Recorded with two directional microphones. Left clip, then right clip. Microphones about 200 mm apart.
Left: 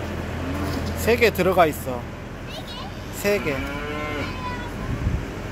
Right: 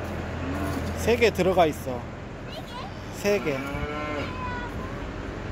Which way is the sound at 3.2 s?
10° right (ahead or behind).